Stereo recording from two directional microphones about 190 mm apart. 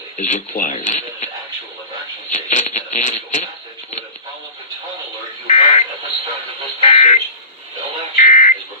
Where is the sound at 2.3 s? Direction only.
40° left (ahead or behind).